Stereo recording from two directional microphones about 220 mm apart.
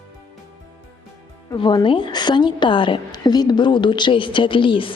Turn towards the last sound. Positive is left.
turn(degrees=25)  # may be behind; listen again after turning